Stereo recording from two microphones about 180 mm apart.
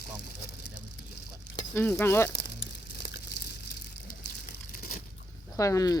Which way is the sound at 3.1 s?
65° left (ahead or behind).